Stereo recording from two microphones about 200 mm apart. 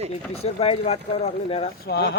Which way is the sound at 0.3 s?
30° left (ahead or behind).